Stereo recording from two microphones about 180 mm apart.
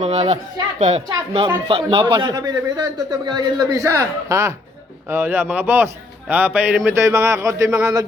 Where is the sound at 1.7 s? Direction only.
30° right (ahead or behind); by 6.9 s 5° right (ahead or behind).